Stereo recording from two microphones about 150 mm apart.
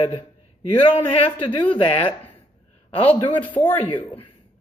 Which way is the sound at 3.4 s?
35° left (ahead or behind).